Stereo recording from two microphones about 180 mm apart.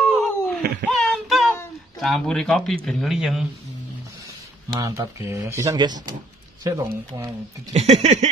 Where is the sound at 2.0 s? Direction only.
Centre (ahead or behind).